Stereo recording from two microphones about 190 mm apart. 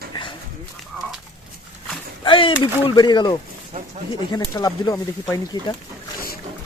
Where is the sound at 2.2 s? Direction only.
25° left (ahead or behind).